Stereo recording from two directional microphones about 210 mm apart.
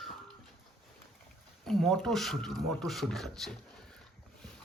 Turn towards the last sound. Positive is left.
turn(degrees=0)  # may be behind; listen again after turning